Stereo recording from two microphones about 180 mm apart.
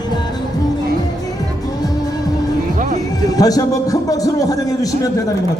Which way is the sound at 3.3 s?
20° left (ahead or behind).